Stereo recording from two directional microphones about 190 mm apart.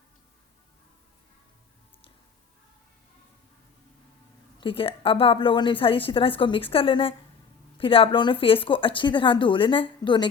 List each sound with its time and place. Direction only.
4.6 s a woman's voice: 30° left (ahead or behind)